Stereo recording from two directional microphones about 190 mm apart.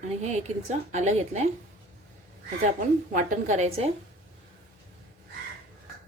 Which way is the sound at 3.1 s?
40° right (ahead or behind).